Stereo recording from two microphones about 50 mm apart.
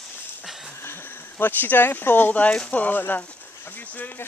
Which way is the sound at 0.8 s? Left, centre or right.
Left.